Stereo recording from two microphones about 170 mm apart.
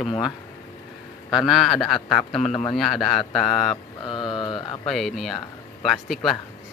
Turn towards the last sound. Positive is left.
turn(degrees=0)  # may be behind; listen again after turning